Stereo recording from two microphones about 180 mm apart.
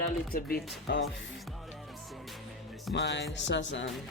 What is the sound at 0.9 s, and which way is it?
Music, 70° left (ahead or behind).